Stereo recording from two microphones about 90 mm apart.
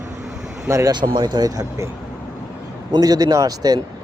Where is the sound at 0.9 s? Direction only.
55° right (ahead or behind); by 1.9 s 35° right (ahead or behind).